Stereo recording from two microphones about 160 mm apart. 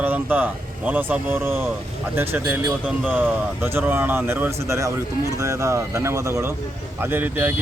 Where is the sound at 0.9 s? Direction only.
10° right (ahead or behind).